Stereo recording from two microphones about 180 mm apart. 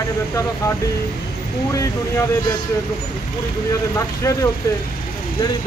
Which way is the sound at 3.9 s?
15° left (ahead or behind).